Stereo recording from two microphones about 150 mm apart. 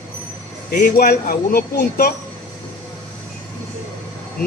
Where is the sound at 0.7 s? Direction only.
90° left.